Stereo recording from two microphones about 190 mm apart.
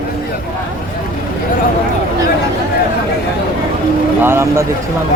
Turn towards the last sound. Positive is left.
turn(degrees=-15)  # may be behind; listen again after turning